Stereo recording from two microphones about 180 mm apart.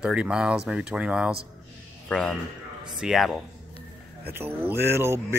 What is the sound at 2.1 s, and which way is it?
Speech, 5° left (ahead or behind).